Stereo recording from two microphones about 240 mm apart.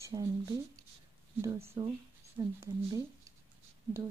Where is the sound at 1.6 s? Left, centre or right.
Right.